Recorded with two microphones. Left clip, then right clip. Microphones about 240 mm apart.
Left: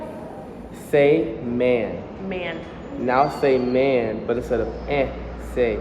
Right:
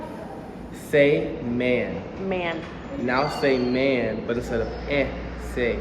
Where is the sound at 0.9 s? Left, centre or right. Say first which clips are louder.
Left 2 dB; centre.